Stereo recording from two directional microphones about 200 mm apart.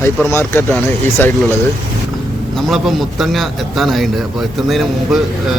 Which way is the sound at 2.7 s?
Centre (ahead or behind).